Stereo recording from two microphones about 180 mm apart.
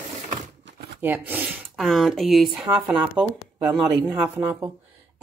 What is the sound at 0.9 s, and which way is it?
A woman's voice, 10° right (ahead or behind).